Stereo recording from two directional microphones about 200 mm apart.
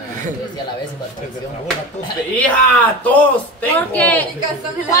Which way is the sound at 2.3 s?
10° left (ahead or behind).